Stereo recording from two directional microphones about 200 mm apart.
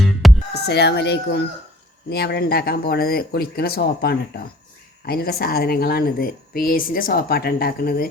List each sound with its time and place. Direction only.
0.5 s speech: 55° left (ahead or behind)